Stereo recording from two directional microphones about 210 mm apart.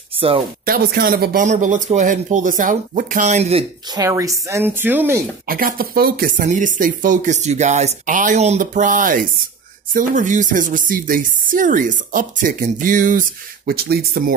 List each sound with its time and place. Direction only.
0.7 s speech: 45° right (ahead or behind); by 3.6 s 30° right (ahead or behind)
3.9 s speech: 15° right (ahead or behind)
5.5 s speech: 45° right (ahead or behind)